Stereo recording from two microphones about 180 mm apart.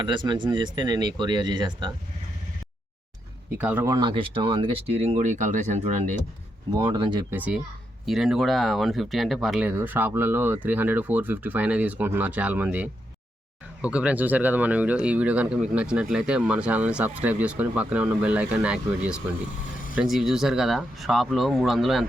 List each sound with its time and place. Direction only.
0.0 s speech: 25° right (ahead or behind)
3.6 s speech: 10° right (ahead or behind)
3.9 s speech: 25° right (ahead or behind)
6.7 s speech: 25° right (ahead or behind)
7.3 s speech: 10° right (ahead or behind)